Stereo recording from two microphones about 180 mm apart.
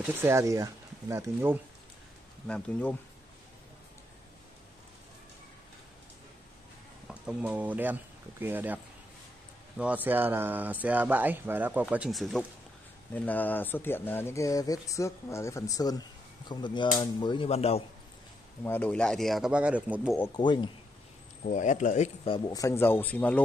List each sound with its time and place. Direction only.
0.2 s speech: 15° right (ahead or behind)
2.4 s speech: 5° left (ahead or behind)
7.1 s speech: 5° right (ahead or behind); by 17.8 s 35° left (ahead or behind)
18.6 s speech: 10° left (ahead or behind); by 20.2 s 5° right (ahead or behind)
20.3 s speech: 25° left (ahead or behind)
21.5 s speech: 45° left (ahead or behind)
22.5 s speech: 15° left (ahead or behind)